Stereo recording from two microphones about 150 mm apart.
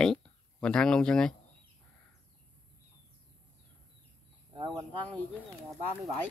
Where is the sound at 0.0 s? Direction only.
5° left (ahead or behind).